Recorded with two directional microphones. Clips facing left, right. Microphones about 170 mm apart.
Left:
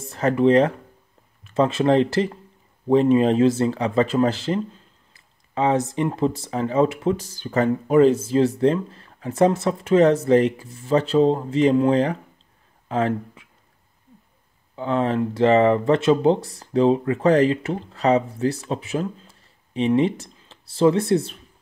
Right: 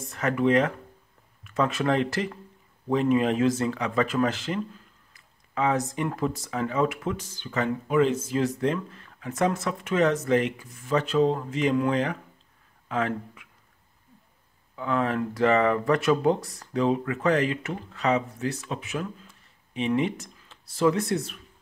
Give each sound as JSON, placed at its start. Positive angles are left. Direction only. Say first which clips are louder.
{"t": 0.0, "sound": "speech", "louder": "left 6 dB", "side_deg": 30}
{"t": 14.8, "sound": "speech", "louder": "left 4 dB", "side_deg": 30}